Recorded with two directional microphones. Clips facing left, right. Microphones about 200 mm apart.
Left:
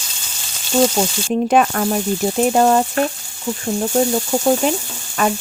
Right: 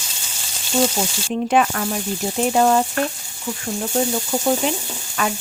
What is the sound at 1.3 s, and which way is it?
Speech, 45° left (ahead or behind).